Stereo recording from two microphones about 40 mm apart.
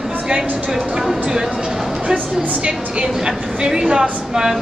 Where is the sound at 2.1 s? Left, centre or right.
Right.